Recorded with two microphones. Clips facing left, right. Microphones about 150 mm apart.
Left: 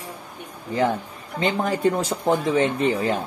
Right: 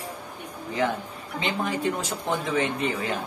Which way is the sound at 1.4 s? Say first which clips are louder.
Left 6 dB; 40° left (ahead or behind).